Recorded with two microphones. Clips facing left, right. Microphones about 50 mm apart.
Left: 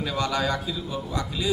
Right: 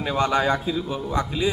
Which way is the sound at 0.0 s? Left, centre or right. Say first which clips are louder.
Right 5 dB; right.